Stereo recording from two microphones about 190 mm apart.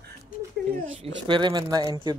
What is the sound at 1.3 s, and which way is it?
Speech, 25° right (ahead or behind).